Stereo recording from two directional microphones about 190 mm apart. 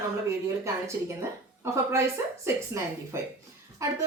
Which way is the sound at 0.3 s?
15° right (ahead or behind).